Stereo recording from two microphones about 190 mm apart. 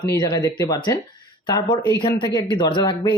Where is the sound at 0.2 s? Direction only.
15° left (ahead or behind).